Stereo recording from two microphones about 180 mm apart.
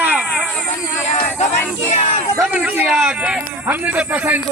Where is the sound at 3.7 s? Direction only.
10° right (ahead or behind).